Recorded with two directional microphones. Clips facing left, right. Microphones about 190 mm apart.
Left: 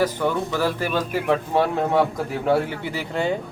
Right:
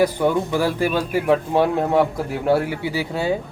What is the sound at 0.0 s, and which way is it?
Speech, 15° right (ahead or behind).